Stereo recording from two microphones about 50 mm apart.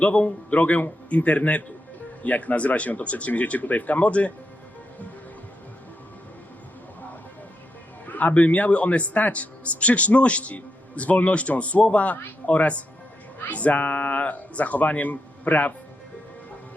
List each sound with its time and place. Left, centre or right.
0.0 s a man's voice: left
8.0 s a man's voice: left